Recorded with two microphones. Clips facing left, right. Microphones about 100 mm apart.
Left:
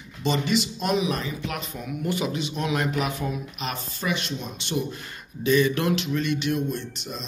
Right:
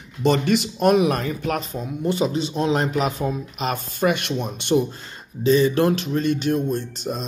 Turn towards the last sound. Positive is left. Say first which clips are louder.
# right 7 dB
turn(degrees=-45)  # may be behind; listen again after turning